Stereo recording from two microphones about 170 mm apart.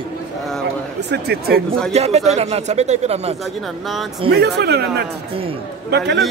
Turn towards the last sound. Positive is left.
turn(degrees=-80)